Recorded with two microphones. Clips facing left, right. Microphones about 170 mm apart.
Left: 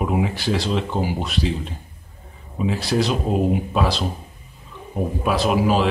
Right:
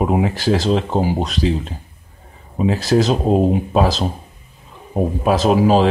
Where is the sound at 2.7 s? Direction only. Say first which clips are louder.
Right 5 dB; 40° right (ahead or behind).